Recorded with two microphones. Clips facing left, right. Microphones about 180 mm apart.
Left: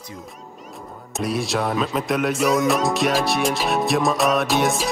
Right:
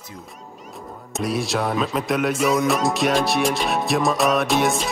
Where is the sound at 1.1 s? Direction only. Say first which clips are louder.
Even; centre (ahead or behind).